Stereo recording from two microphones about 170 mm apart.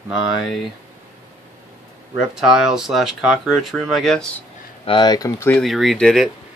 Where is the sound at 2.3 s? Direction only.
5° right (ahead or behind).